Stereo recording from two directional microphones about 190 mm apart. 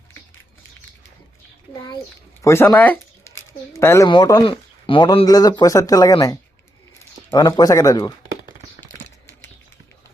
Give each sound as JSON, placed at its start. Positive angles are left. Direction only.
{"t": 2.4, "sound": "speech", "side_deg": 15}